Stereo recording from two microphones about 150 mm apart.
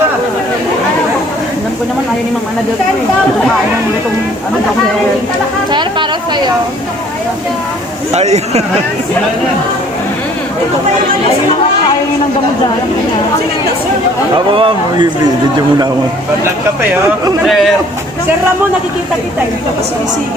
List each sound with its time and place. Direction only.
5.7 s speech: 30° right (ahead or behind)
8.1 s a man's voice: 45° right (ahead or behind)
14.5 s a man's voice: 35° right (ahead or behind)